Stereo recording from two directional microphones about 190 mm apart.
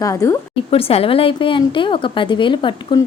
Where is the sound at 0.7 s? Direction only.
30° left (ahead or behind).